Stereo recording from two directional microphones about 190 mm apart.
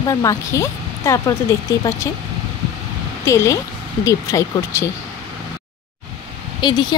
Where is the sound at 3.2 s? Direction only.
15° left (ahead or behind).